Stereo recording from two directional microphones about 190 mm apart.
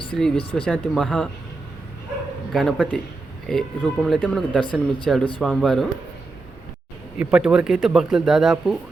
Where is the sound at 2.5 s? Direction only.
Centre (ahead or behind).